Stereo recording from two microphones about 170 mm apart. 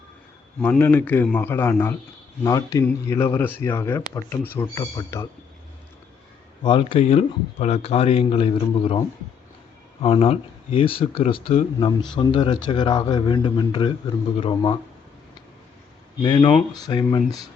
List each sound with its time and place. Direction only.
0.6 s speech: 10° left (ahead or behind)
4.6 s a man's voice: 25° left (ahead or behind)
6.6 s a man's voice: 30° left (ahead or behind)
16.2 s a man's voice: 25° left (ahead or behind)